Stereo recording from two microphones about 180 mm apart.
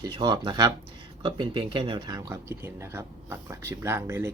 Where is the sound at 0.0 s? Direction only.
20° right (ahead or behind).